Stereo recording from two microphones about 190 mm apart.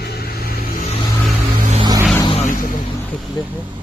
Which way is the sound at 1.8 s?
20° right (ahead or behind).